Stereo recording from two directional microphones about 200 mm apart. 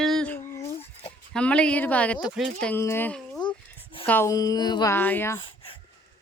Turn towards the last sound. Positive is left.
turn(degrees=25)  # may be behind; listen again after turning